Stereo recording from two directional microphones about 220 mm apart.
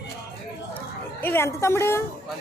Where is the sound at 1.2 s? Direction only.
10° left (ahead or behind).